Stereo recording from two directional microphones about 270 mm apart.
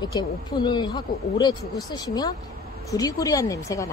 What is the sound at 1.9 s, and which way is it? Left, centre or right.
Speech, centre.